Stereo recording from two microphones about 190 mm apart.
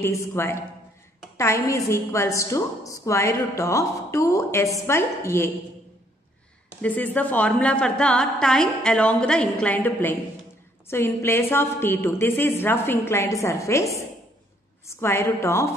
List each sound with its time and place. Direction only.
0.0 s a woman's voice: 15° left (ahead or behind)
6.8 s a woman's voice: 10° left (ahead or behind)
14.9 s a woman's voice: 15° left (ahead or behind)